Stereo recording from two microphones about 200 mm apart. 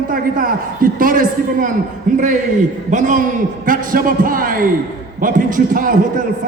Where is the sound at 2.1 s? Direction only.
40° right (ahead or behind).